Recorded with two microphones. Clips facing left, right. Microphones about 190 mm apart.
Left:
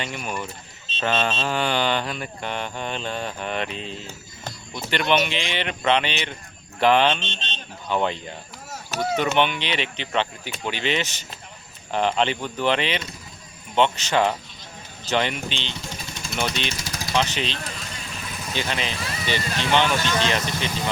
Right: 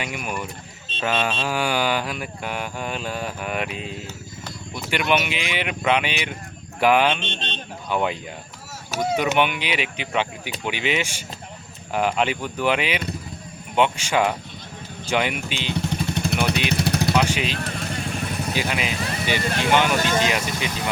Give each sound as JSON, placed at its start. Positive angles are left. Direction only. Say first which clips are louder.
{"t": 0.9, "sound": "speech", "louder": "even", "side_deg": -10}
{"t": 7.2, "sound": "speech", "louder": "right 4 dB", "side_deg": -55}
{"t": 7.9, "sound": "speech", "louder": "even", "side_deg": -10}
{"t": 15.7, "sound": "vehicle", "louder": "right 11 dB", "side_deg": -60}
{"t": 17.2, "sound": "speech", "louder": "right 3 dB", "side_deg": -10}
{"t": 17.6, "sound": "vehicle", "louder": "right 7 dB", "side_deg": -55}
{"t": 18.5, "sound": "speech", "louder": "even", "side_deg": -10}